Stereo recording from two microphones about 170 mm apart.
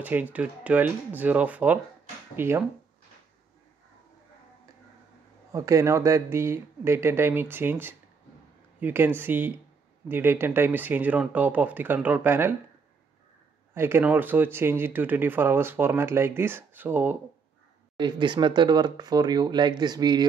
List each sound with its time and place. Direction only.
0.0 s speech: 10° right (ahead or behind)
5.5 s speech: 20° right (ahead or behind)
13.7 s speech: 15° right (ahead or behind)
17.9 s speech: 25° right (ahead or behind)